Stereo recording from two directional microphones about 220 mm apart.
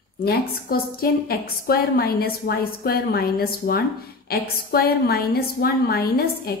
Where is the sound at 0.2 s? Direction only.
45° left (ahead or behind).